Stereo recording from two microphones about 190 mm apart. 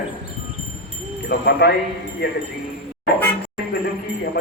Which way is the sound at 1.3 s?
60° left (ahead or behind).